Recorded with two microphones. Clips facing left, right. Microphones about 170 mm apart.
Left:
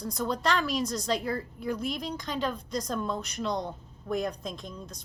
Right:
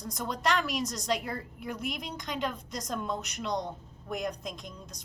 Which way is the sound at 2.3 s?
15° right (ahead or behind).